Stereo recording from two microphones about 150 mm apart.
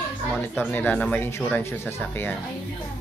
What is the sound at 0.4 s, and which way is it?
Speech, 15° left (ahead or behind).